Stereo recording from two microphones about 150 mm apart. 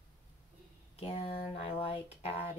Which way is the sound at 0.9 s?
40° left (ahead or behind).